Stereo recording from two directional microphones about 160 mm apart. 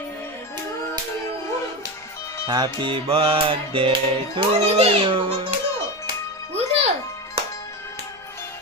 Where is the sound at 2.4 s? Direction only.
30° right (ahead or behind).